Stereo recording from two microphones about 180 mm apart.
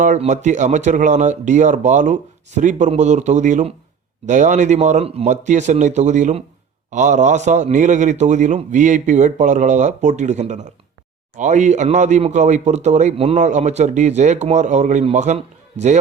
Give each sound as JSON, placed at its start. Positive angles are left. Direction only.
{"t": 0.0, "sound": "speech", "side_deg": -45}